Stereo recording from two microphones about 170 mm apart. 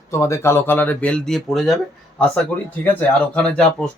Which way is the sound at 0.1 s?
15° left (ahead or behind).